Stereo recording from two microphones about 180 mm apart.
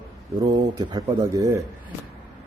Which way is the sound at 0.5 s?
20° right (ahead or behind).